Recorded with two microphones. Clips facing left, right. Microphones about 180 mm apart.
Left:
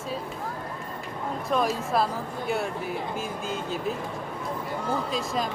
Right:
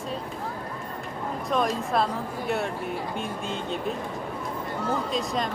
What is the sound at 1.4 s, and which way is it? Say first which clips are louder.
A woman's voice: even; centre (ahead or behind).